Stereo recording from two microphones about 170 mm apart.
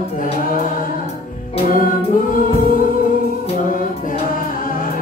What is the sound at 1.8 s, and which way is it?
Choir, 55° left (ahead or behind).